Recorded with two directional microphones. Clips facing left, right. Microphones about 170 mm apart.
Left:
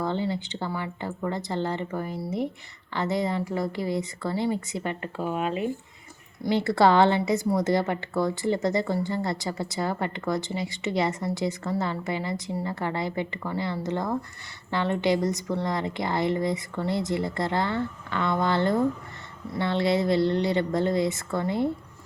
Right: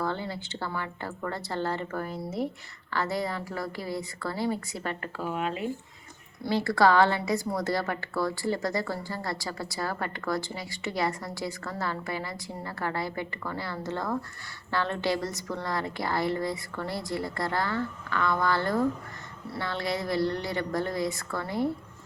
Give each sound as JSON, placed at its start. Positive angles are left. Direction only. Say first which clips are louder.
{"t": 0.0, "sound": "a woman's voice", "louder": "left 4 dB", "side_deg": 20}